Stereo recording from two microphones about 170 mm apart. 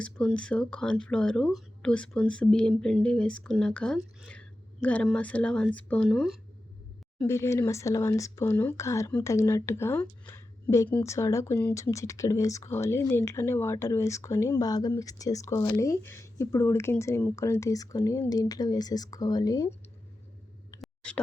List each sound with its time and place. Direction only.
0.0 s speech: 5° left (ahead or behind)
7.2 s speech: 15° left (ahead or behind)
20.8 s clicking: 5° left (ahead or behind)